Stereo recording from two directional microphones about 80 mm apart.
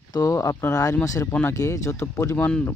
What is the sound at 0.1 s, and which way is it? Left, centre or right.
Speech, left.